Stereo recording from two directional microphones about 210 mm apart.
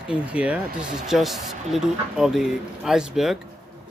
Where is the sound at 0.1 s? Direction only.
5° right (ahead or behind).